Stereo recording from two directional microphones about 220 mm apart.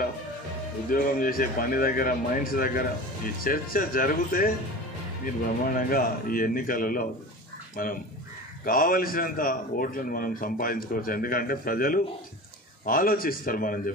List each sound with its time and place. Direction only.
0.8 s a man's voice: 40° left (ahead or behind)